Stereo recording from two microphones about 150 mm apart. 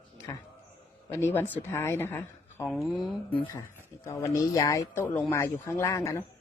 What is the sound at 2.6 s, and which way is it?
Speech, centre (ahead or behind).